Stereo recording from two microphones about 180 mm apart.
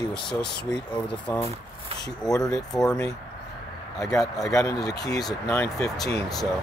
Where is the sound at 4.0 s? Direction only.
5° left (ahead or behind).